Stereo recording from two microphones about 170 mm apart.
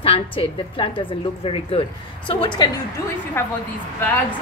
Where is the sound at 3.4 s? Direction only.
15° left (ahead or behind).